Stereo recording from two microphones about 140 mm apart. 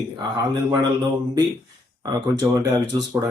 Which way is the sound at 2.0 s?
25° right (ahead or behind).